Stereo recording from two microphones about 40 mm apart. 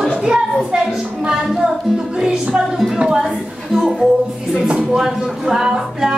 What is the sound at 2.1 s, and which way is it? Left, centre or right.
Music, centre.